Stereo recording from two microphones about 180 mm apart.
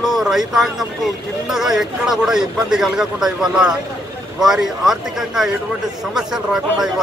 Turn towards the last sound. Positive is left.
turn(degrees=-5)  # may be behind; listen again after turning